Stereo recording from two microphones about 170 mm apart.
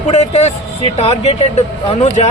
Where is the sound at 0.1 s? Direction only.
40° left (ahead or behind).